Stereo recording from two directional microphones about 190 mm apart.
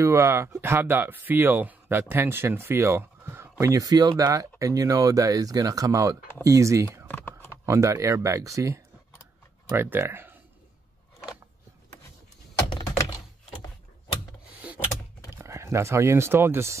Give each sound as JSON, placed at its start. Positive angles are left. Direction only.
{"t": 0.0, "sound": "speech", "side_deg": -15}
{"t": 7.1, "sound": "typing", "side_deg": 10}
{"t": 7.6, "sound": "speech", "side_deg": -15}
{"t": 12.6, "sound": "typing", "side_deg": 25}
{"t": 15.3, "sound": "speech", "side_deg": -15}